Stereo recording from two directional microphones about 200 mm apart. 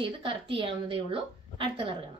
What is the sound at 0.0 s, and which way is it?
A woman's voice, 25° right (ahead or behind).